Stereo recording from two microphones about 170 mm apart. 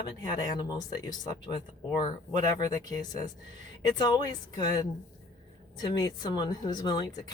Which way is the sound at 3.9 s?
25° left (ahead or behind).